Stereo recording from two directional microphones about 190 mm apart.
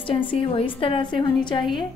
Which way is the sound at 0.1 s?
30° left (ahead or behind).